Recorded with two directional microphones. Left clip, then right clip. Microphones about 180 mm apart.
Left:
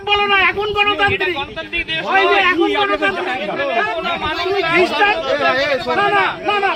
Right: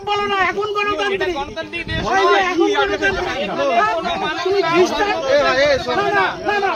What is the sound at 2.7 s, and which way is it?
Speech, 50° left (ahead or behind).